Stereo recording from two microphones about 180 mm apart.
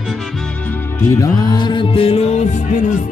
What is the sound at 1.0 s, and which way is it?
Music, 15° left (ahead or behind).